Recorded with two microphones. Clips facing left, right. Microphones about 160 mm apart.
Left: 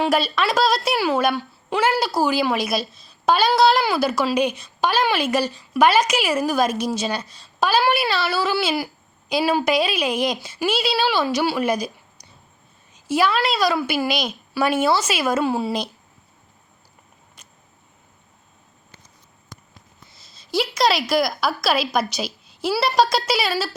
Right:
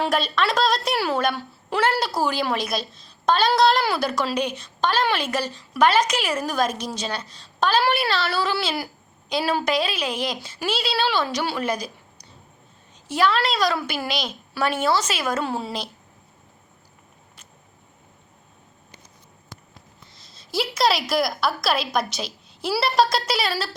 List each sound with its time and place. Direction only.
0.0 s a woman's voice: 5° left (ahead or behind)
13.1 s a woman's voice: 5° left (ahead or behind)
20.1 s a woman's voice: centre (ahead or behind)